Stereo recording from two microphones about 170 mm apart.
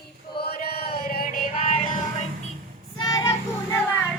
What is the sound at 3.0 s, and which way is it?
Child singing, 20° left (ahead or behind).